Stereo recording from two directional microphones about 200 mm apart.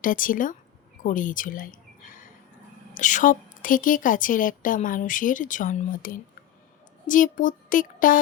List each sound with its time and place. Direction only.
0.0 s a woman's voice: 45° left (ahead or behind)